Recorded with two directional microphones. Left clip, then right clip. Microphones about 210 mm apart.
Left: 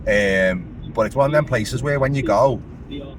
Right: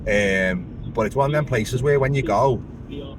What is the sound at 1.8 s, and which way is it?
Speech, 15° left (ahead or behind).